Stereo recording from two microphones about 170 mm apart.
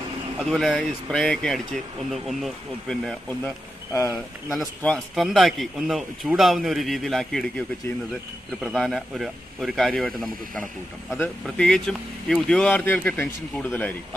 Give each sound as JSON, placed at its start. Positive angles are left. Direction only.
{"t": 0.4, "sound": "speech", "side_deg": 0}
{"t": 3.9, "sound": "speech", "side_deg": 15}
{"t": 4.5, "sound": "speech", "side_deg": 0}
{"t": 8.5, "sound": "speech", "side_deg": 0}